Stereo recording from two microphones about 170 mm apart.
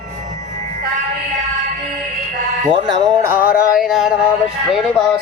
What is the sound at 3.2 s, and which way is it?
Speech, 15° right (ahead or behind).